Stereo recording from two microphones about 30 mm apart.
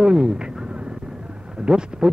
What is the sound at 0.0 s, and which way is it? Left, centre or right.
Speech, centre.